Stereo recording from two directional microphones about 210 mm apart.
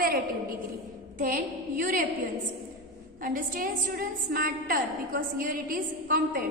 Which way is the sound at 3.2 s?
40° right (ahead or behind).